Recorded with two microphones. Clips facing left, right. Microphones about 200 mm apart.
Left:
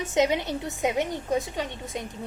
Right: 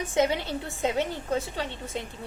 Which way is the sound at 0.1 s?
20° left (ahead or behind).